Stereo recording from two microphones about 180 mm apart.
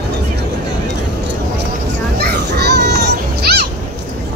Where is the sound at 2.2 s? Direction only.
65° right (ahead or behind).